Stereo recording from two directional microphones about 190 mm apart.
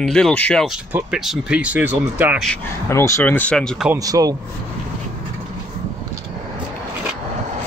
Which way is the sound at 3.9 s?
20° right (ahead or behind).